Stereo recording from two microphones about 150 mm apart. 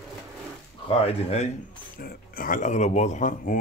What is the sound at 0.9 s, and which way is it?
Speech, 40° left (ahead or behind).